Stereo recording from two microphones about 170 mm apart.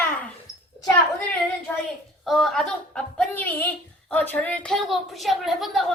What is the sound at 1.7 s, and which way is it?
A woman's voice, 10° left (ahead or behind).